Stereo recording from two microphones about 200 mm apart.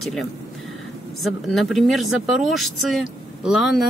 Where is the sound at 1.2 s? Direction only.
Centre (ahead or behind).